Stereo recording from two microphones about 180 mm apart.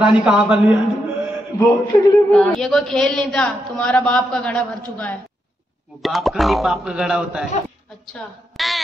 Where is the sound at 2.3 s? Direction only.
5° left (ahead or behind).